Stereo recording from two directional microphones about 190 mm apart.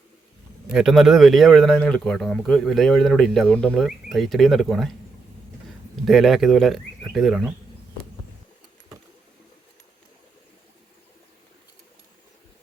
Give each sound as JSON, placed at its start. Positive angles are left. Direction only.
{"t": 0.7, "sound": "a man's voice", "side_deg": 0}
{"t": 6.1, "sound": "a man's voice", "side_deg": 0}